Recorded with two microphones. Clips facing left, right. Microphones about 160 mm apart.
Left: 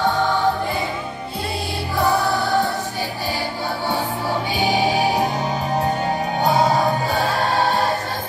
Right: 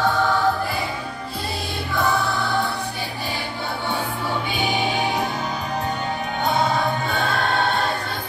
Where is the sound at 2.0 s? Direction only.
40° left (ahead or behind).